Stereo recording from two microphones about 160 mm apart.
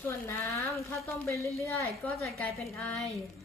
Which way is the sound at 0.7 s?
20° left (ahead or behind).